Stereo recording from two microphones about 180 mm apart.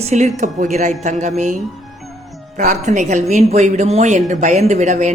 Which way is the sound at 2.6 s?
45° right (ahead or behind).